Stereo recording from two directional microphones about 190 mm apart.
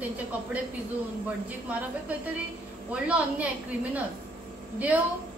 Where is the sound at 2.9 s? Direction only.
5° right (ahead or behind).